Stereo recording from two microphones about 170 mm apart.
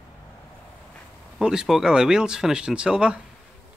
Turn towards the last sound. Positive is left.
turn(degrees=-5)  # may be behind; listen again after turning